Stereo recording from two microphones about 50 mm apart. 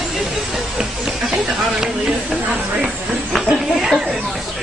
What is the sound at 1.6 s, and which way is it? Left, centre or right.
Speech, centre.